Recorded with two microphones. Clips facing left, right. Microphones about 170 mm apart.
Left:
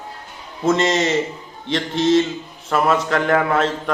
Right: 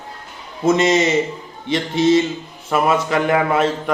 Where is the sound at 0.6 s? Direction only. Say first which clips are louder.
Right 2 dB; 10° right (ahead or behind).